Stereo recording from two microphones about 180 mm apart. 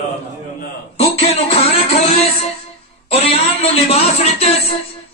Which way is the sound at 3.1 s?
35° left (ahead or behind).